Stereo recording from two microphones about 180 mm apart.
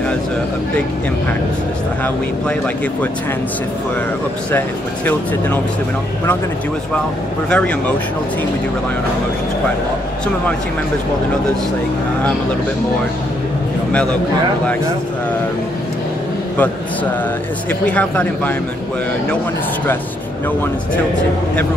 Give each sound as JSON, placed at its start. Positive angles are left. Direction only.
{"t": 2.4, "sound": "speech", "side_deg": 5}
{"t": 4.5, "sound": "speech", "side_deg": 10}
{"t": 7.4, "sound": "speech", "side_deg": 5}
{"t": 16.5, "sound": "a man's voice", "side_deg": 10}